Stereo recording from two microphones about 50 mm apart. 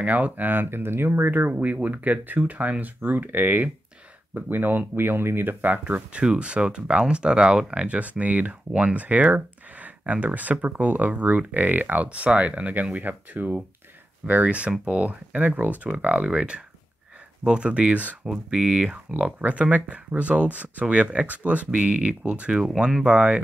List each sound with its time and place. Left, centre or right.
0.0 s speech: right
5.7 s speech: right
18.2 s speech: centre